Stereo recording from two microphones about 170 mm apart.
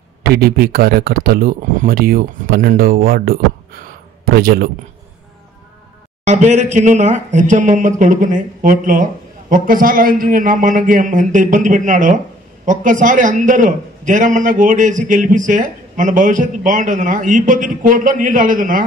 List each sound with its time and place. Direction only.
0.2 s speech: 65° right (ahead or behind)
6.2 s a man's voice: 40° right (ahead or behind)